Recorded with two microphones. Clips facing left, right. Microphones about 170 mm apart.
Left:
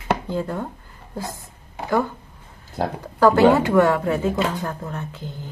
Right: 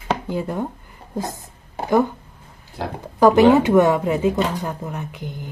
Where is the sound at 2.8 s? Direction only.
45° left (ahead or behind).